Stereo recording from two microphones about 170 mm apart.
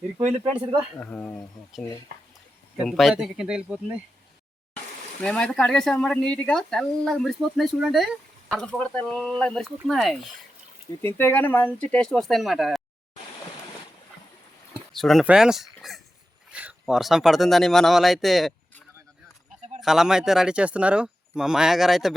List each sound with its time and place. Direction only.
0.2 s speech: 45° right (ahead or behind)
0.9 s speech: 5° left (ahead or behind)
2.1 s speech: 70° right (ahead or behind)
2.7 s speech: centre (ahead or behind)
5.2 s speech: 5° left (ahead or behind)
11.0 s speech: 10° left (ahead or behind)
14.9 s speech: centre (ahead or behind)
16.5 s a sound: 10° right (ahead or behind)
16.8 s speech: centre (ahead or behind)
19.8 s speech: 5° right (ahead or behind)